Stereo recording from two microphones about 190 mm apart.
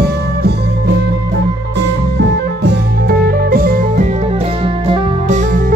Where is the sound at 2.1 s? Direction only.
60° right (ahead or behind).